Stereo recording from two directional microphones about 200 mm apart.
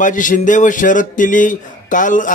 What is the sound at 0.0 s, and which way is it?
Speech, 40° left (ahead or behind).